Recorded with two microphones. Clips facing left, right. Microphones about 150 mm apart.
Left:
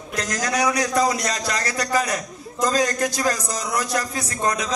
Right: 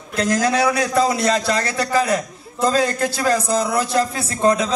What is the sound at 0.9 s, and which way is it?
A man's voice, 25° right (ahead or behind).